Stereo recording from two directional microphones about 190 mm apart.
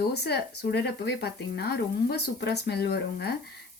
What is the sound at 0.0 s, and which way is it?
Speech, 60° left (ahead or behind).